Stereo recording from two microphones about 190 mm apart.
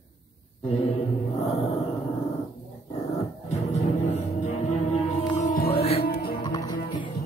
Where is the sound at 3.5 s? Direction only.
35° left (ahead or behind).